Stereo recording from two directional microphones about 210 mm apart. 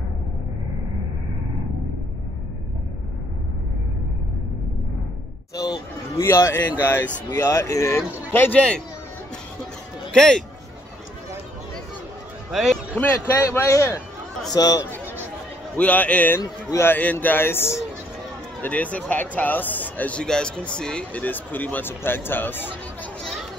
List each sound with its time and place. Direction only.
5.6 s speech: 15° left (ahead or behind)
10.1 s a man's voice: 5° left (ahead or behind)
12.4 s a man's voice: centre (ahead or behind); by 15.0 s 15° left (ahead or behind)
15.7 s speech: 5° left (ahead or behind)